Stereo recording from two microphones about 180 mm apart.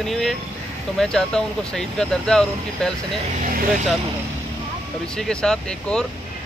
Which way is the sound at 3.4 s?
50° right (ahead or behind).